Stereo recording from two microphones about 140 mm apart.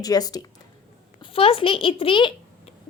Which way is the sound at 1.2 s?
40° left (ahead or behind).